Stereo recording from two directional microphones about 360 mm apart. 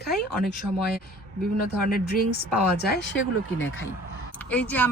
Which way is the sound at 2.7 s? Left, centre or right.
Left.